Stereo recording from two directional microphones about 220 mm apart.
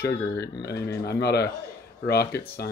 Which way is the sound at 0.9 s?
50° left (ahead or behind).